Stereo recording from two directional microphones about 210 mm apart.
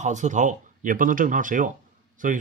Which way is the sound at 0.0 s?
35° right (ahead or behind).